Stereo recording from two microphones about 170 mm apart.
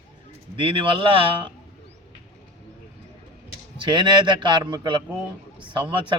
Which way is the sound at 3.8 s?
25° right (ahead or behind).